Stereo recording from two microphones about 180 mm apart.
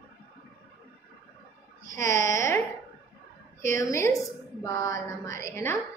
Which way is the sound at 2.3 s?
15° left (ahead or behind).